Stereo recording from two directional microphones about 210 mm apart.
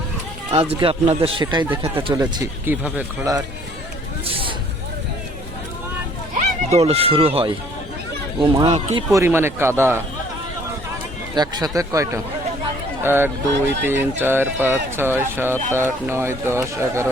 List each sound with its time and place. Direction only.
0.5 s speech: 30° right (ahead or behind); by 3.3 s 10° right (ahead or behind)
4.3 s hubbub: 25° right (ahead or behind)
6.3 s speech: 30° right (ahead or behind)
8.5 s speech: 25° right (ahead or behind)
9.1 s speech: 10° right (ahead or behind)
11.3 s speech: 20° right (ahead or behind)